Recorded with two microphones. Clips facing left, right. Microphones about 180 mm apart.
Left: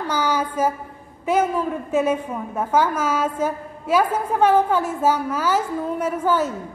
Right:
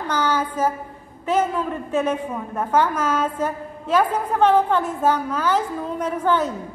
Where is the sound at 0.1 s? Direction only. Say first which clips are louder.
Right 1 dB; 10° left (ahead or behind).